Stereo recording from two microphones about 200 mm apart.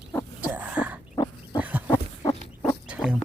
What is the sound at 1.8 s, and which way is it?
Dog, 20° left (ahead or behind).